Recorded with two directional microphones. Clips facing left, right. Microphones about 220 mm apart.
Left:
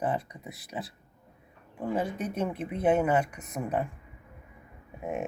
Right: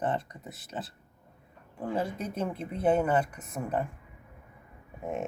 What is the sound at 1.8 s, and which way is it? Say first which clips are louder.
Speech: left 1 dB; 5° left (ahead or behind).